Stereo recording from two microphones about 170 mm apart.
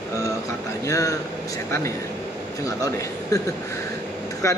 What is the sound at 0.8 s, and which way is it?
Speech, 20° left (ahead or behind).